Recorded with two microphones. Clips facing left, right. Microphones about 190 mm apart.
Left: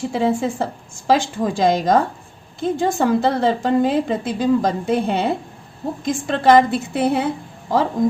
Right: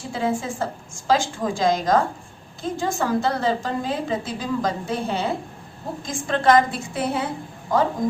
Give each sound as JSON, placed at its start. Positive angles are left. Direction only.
{"t": 0.1, "sound": "a woman's voice", "side_deg": 65}